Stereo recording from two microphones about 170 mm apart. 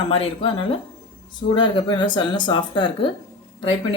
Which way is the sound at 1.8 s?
25° left (ahead or behind).